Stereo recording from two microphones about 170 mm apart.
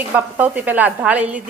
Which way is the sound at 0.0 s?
10° right (ahead or behind).